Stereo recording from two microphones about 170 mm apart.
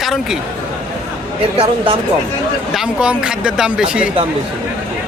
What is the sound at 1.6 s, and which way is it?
Speech, 35° right (ahead or behind).